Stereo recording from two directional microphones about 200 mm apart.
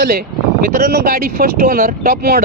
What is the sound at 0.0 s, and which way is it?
Speech, 50° right (ahead or behind).